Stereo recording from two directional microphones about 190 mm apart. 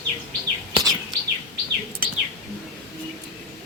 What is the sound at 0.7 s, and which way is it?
Bird, 20° right (ahead or behind).